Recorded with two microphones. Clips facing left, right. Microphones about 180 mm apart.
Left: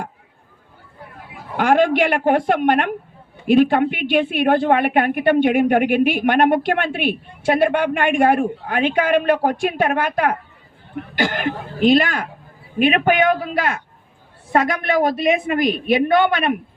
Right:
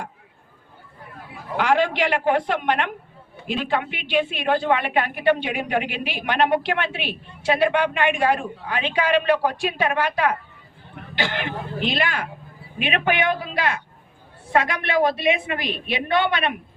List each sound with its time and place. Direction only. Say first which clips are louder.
1.5 s a woman's voice: left 5 dB; 50° left (ahead or behind)